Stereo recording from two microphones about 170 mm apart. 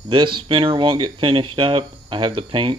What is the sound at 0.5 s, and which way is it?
Speech, 30° right (ahead or behind).